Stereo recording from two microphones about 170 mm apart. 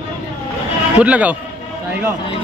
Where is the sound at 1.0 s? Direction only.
10° right (ahead or behind).